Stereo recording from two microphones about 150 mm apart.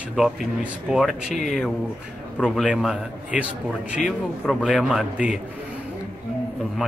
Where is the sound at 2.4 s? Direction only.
5° right (ahead or behind).